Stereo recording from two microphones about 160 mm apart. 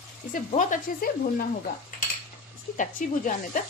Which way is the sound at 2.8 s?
55° left (ahead or behind).